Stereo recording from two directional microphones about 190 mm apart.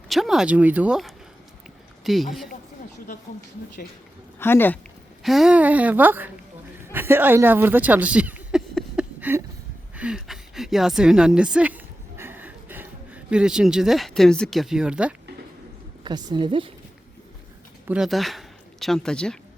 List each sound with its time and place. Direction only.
0.1 s speech: centre (ahead or behind)
4.4 s speech: 10° left (ahead or behind)
5.2 s a woman's voice: centre (ahead or behind)
9.9 s a sound: 5° right (ahead or behind)
16.0 s a woman's voice: 20° right (ahead or behind)
17.8 s speech: 5° right (ahead or behind)